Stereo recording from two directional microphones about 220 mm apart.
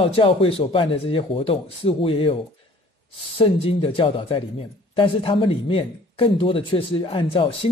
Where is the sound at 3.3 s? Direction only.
25° left (ahead or behind).